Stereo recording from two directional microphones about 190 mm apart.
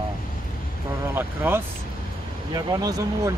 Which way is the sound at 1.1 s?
10° right (ahead or behind).